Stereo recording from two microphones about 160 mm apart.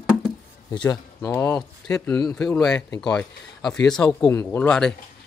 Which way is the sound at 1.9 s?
5° left (ahead or behind).